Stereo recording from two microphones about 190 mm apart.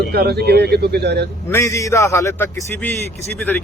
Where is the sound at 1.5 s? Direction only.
15° left (ahead or behind).